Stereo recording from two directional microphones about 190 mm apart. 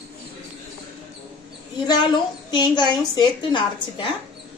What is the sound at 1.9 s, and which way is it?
A woman's voice, 20° left (ahead or behind).